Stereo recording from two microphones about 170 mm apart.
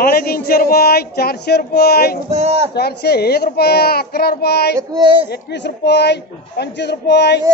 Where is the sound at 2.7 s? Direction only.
70° left (ahead or behind).